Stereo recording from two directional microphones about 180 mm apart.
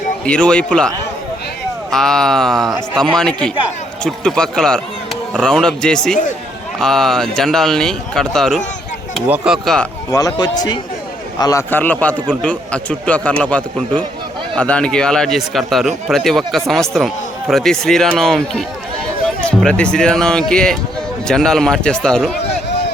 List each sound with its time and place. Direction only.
0.3 s speech: 5° left (ahead or behind)
1.9 s speech: 5° left (ahead or behind)
10.1 s a man's voice: 20° left (ahead or behind); by 22.4 s 5° left (ahead or behind)